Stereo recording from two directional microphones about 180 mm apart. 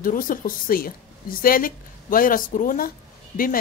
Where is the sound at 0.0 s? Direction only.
50° left (ahead or behind).